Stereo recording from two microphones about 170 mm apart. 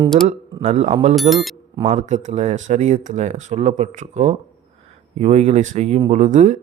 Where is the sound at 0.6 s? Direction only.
40° right (ahead or behind).